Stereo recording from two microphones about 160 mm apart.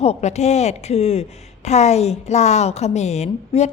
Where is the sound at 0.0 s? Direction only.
45° left (ahead or behind).